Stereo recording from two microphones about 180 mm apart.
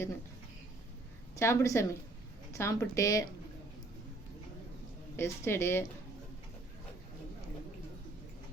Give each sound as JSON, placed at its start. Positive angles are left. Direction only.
{"t": 1.4, "sound": "speech", "side_deg": 15}
{"t": 5.1, "sound": "speech", "side_deg": 15}